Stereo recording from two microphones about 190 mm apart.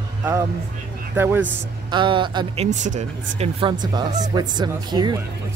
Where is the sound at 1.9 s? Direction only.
25° right (ahead or behind).